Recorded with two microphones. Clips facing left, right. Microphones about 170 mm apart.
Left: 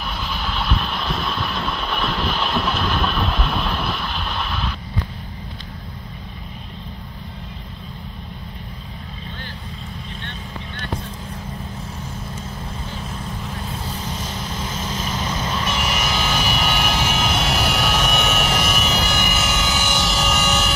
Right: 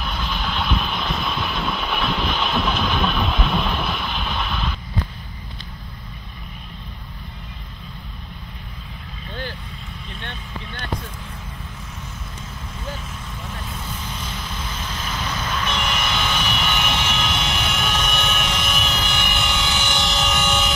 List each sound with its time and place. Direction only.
0.0 s vehicle: centre (ahead or behind)
13.6 s vehicle: 35° left (ahead or behind)
15.1 s vehicle: 25° left (ahead or behind)
15.6 s vehicle: 5° left (ahead or behind)
16.6 s vehicle: 40° left (ahead or behind)
17.2 s vehicle: 5° left (ahead or behind)